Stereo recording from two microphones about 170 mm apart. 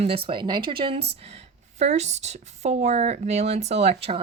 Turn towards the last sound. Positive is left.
turn(degrees=-35)  # may be behind; listen again after turning